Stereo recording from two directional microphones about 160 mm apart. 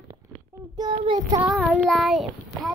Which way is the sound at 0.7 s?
30° right (ahead or behind).